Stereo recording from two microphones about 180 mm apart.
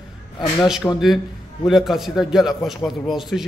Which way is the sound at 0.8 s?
15° left (ahead or behind).